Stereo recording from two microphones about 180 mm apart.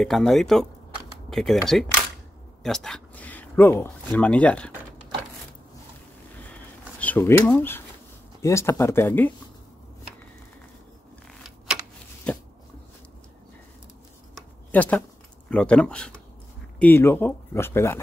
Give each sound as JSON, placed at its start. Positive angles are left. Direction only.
{"t": 0.0, "sound": "speech", "side_deg": 0}
{"t": 2.6, "sound": "speech", "side_deg": 5}
{"t": 7.0, "sound": "speech", "side_deg": 10}
{"t": 11.4, "sound": "a sound", "side_deg": -5}
{"t": 12.3, "sound": "dog", "side_deg": 5}
{"t": 14.3, "sound": "a sound", "side_deg": 10}
{"t": 15.5, "sound": "speech", "side_deg": 5}